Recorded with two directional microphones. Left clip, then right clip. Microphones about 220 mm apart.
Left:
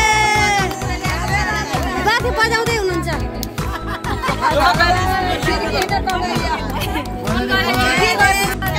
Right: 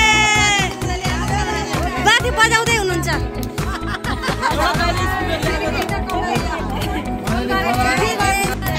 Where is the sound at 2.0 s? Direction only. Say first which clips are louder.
Right 3 dB; 5° left (ahead or behind).